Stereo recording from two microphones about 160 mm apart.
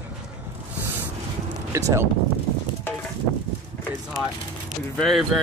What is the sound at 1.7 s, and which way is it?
Speech, 20° right (ahead or behind).